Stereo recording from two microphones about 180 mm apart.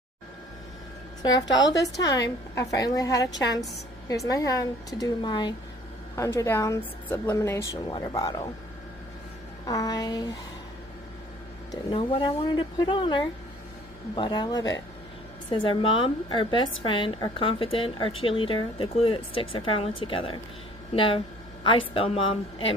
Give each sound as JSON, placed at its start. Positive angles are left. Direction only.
{"t": 1.5, "sound": "a woman's voice", "side_deg": 20}
{"t": 9.7, "sound": "a woman's voice", "side_deg": 20}
{"t": 11.7, "sound": "a woman's voice", "side_deg": 25}